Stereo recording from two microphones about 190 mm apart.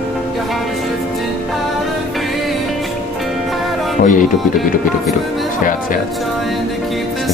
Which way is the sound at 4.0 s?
45° left (ahead or behind).